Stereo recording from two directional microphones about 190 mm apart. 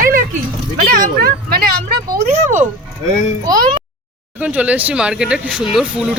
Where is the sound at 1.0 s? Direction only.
50° right (ahead or behind).